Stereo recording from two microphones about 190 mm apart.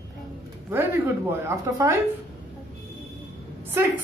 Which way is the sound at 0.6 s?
10° right (ahead or behind).